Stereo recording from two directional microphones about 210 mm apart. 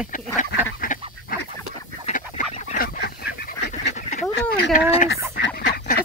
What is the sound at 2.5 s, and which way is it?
Goose, 40° left (ahead or behind).